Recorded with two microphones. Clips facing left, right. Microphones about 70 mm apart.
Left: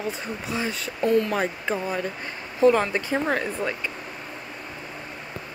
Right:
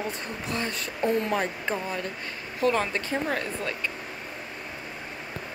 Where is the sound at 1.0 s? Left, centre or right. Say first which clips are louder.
Left 5 dB; right.